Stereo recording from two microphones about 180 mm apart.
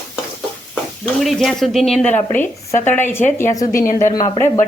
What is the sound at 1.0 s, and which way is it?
A woman's voice, centre (ahead or behind).